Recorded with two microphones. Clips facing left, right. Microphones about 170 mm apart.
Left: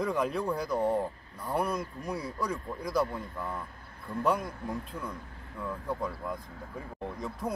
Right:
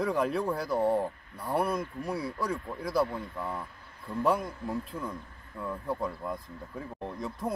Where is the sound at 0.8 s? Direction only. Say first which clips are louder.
Right 2 dB; 30° right (ahead or behind).